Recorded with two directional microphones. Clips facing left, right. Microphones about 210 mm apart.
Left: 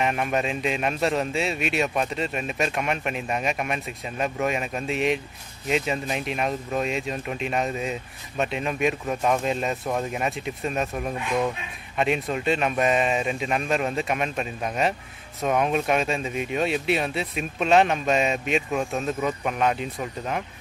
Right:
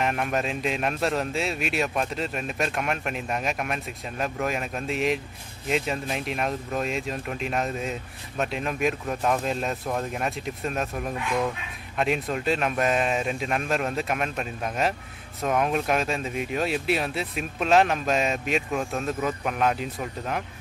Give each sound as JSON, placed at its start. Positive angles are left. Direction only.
{"t": 0.0, "sound": "speech", "side_deg": 0}